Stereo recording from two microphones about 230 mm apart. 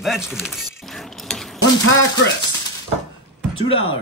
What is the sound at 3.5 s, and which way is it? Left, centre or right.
Speech, left.